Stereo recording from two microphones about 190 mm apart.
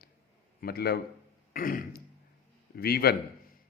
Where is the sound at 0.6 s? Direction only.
55° left (ahead or behind).